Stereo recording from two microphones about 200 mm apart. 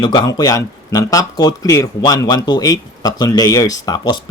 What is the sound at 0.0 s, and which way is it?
Speech, 20° left (ahead or behind).